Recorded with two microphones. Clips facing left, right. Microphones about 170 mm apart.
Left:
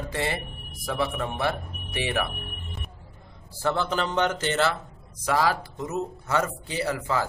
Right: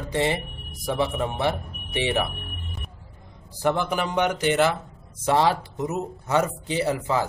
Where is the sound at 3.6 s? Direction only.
15° right (ahead or behind).